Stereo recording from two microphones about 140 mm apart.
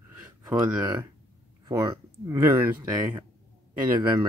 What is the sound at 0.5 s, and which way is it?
Speech, 25° right (ahead or behind).